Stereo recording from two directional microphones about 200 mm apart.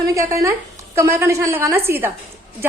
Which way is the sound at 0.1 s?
15° right (ahead or behind).